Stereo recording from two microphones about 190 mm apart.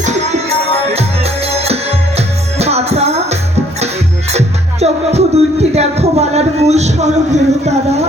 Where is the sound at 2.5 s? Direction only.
35° right (ahead or behind).